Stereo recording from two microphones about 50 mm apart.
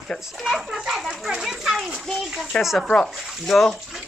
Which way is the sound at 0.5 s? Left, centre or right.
Centre.